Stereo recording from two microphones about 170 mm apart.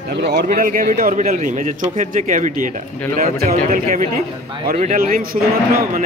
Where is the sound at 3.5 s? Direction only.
45° right (ahead or behind).